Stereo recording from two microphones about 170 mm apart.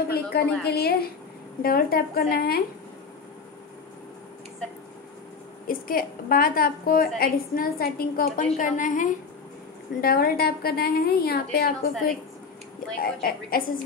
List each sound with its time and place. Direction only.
0.3 s a woman's voice: 70° left (ahead or behind)
5.7 s a woman's voice: 55° left (ahead or behind)
8.5 s a woman's voice: 50° left (ahead or behind)
9.9 s a woman's voice: 60° left (ahead or behind)
13.0 s a woman's voice: 60° left (ahead or behind)